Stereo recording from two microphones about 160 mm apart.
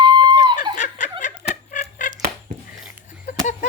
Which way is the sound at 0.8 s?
50° left (ahead or behind).